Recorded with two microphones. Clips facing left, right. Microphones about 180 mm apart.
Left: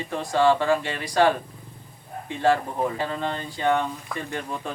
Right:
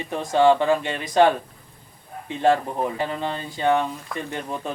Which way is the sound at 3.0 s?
15° right (ahead or behind).